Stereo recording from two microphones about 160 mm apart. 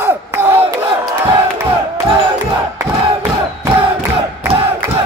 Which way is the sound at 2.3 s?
20° right (ahead or behind).